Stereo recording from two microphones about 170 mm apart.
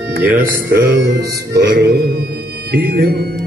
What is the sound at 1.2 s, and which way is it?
Music, 70° right (ahead or behind).